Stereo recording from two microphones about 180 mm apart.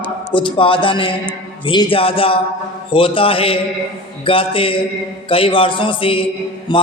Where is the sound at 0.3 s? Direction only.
30° left (ahead or behind).